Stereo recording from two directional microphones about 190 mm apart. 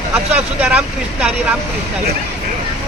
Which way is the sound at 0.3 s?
5° right (ahead or behind).